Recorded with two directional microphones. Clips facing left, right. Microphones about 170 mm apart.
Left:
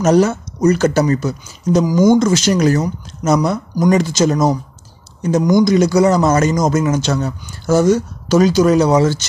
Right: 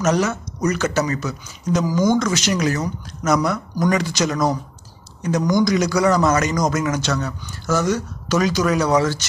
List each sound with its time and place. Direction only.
0.0 s speech: 30° left (ahead or behind)
1.9 s speech: 10° left (ahead or behind)
2.1 s speech: 30° left (ahead or behind)